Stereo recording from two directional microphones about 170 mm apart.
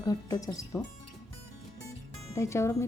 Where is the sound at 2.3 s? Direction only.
15° left (ahead or behind).